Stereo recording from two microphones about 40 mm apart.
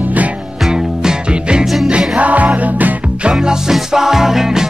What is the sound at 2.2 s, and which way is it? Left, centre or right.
Music, right.